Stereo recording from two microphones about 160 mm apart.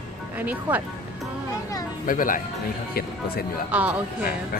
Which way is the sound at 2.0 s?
60° left (ahead or behind).